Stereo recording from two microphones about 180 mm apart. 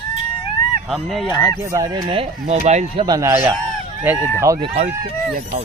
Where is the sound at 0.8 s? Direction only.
Centre (ahead or behind).